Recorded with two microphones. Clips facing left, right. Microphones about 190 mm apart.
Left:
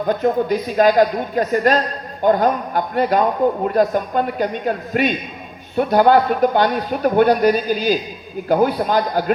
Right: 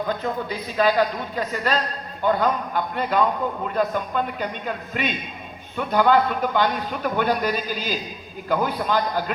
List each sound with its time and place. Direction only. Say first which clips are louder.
0.1 s a man's voice: left 9 dB; 50° left (ahead or behind)